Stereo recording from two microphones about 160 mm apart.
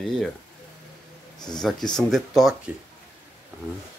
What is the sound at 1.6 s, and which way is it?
Speech, centre (ahead or behind).